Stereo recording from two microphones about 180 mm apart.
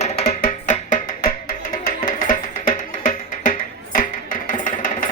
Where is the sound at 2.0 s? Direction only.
50° left (ahead or behind).